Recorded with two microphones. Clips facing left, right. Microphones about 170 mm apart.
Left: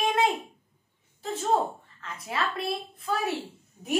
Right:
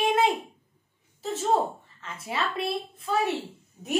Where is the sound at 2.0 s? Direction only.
Centre (ahead or behind).